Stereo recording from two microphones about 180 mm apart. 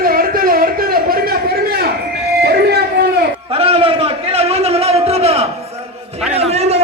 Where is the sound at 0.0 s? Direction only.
55° right (ahead or behind).